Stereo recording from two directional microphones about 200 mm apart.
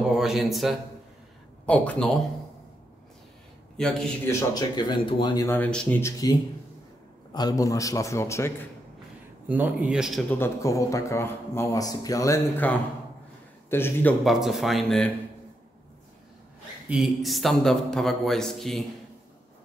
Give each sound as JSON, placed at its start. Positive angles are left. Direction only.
{"t": 0.1, "sound": "a man's voice", "side_deg": 0}
{"t": 3.7, "sound": "a man's voice", "side_deg": 5}
{"t": 4.3, "sound": "a man's voice", "side_deg": 20}
{"t": 7.3, "sound": "a man's voice", "side_deg": 20}
{"t": 9.5, "sound": "a man's voice", "side_deg": -10}
{"t": 10.3, "sound": "a man's voice", "side_deg": 15}
{"t": 14.2, "sound": "a man's voice", "side_deg": 0}
{"t": 16.9, "sound": "a man's voice", "side_deg": 0}